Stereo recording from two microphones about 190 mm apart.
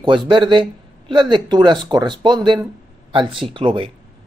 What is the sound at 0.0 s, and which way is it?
Speech, 25° right (ahead or behind).